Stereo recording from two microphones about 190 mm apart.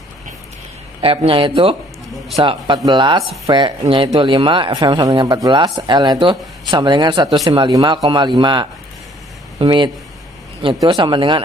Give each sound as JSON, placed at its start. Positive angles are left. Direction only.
{"t": 1.0, "sound": "speech", "side_deg": -30}